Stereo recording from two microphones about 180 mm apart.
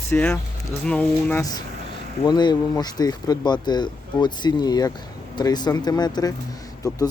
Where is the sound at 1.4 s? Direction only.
20° left (ahead or behind).